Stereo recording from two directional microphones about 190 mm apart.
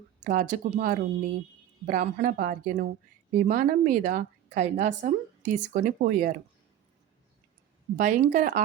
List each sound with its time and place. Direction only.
0.3 s a woman's voice: 40° right (ahead or behind)
7.9 s a woman's voice: 40° right (ahead or behind)